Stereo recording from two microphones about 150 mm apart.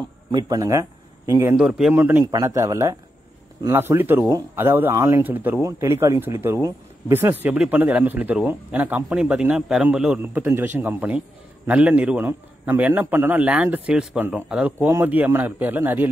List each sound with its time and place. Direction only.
0.3 s a man's voice: 25° right (ahead or behind)
1.6 s a man's voice: 5° right (ahead or behind)
2.3 s speech: 20° right (ahead or behind)